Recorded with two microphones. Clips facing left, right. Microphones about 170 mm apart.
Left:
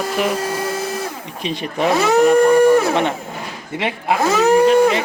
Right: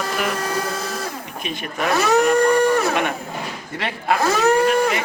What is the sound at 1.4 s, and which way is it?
Speech, 30° left (ahead or behind).